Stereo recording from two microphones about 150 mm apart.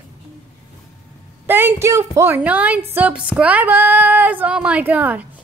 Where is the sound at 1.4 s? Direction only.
15° right (ahead or behind).